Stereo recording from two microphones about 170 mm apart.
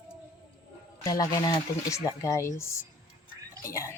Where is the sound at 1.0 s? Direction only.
20° left (ahead or behind).